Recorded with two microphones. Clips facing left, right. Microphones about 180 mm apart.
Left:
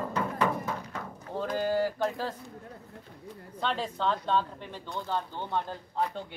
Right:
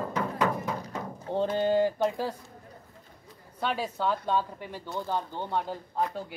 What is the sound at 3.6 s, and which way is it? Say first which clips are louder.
Speech: right 1 dB; 10° right (ahead or behind).